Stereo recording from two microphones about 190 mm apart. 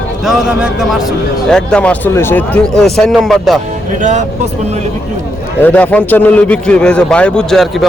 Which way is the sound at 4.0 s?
40° right (ahead or behind).